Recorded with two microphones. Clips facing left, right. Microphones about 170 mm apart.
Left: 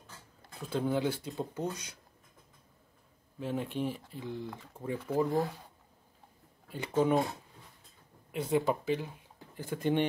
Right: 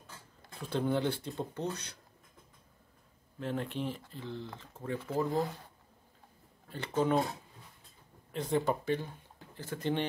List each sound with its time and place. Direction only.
0.6 s speech: centre (ahead or behind)
3.3 s speech: 10° left (ahead or behind)
5.1 s speech: centre (ahead or behind)
6.7 s speech: 10° left (ahead or behind)
8.3 s speech: 10° left (ahead or behind)